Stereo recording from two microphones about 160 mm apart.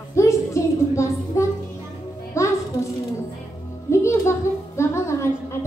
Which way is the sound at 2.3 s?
20° left (ahead or behind).